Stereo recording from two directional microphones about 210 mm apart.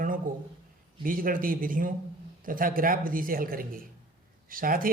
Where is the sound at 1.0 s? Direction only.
40° right (ahead or behind).